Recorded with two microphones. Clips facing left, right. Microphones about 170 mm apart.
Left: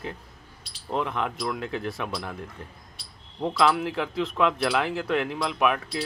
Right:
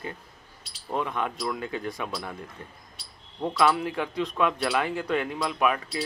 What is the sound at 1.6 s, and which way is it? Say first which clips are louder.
Speech: left 1 dB; 90° left.